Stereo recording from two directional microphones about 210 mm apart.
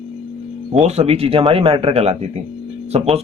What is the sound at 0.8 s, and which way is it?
Speech, 30° right (ahead or behind).